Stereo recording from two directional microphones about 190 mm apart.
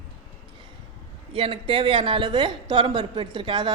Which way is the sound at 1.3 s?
30° right (ahead or behind).